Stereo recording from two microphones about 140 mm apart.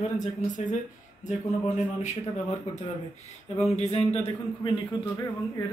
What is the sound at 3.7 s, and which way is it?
Speech, 50° left (ahead or behind).